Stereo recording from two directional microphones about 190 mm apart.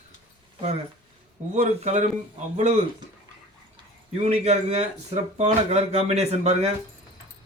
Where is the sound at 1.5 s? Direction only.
40° right (ahead or behind).